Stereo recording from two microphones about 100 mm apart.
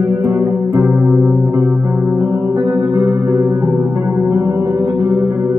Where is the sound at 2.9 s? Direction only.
30° right (ahead or behind).